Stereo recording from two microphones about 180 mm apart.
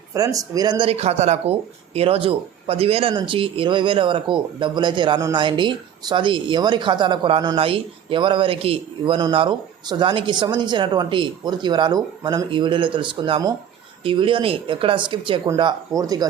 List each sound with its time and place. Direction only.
0.1 s speech: 20° right (ahead or behind)